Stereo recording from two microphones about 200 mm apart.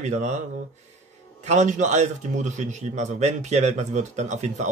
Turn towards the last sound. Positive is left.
turn(degrees=-35)  # may be behind; listen again after turning